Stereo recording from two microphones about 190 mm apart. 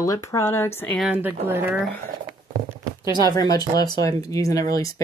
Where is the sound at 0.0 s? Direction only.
15° left (ahead or behind).